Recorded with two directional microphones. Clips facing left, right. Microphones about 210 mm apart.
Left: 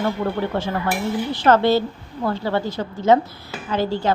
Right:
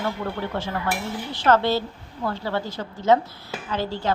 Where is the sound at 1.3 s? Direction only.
15° left (ahead or behind).